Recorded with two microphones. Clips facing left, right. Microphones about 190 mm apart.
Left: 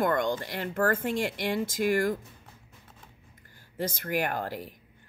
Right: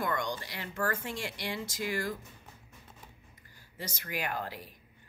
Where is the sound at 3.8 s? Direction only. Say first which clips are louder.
Left 8 dB; 55° left (ahead or behind).